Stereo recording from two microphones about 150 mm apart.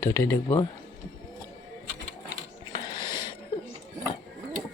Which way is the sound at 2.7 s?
30° left (ahead or behind).